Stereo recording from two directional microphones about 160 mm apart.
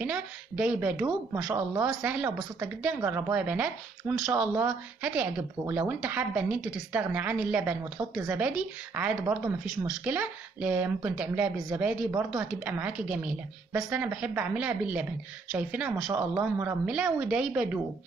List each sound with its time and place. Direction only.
0.0 s a woman's voice: 5° right (ahead or behind)